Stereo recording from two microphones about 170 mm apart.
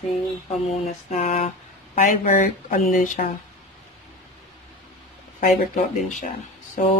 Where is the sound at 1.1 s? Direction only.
45° left (ahead or behind).